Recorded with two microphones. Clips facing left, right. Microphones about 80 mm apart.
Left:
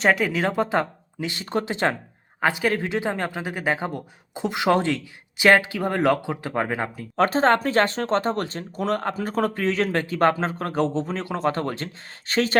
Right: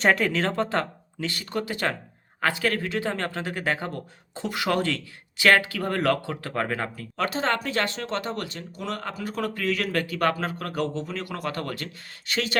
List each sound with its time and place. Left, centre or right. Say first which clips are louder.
0.0 s speech: left 1 dB; centre
7.2 s speech: left 7 dB; left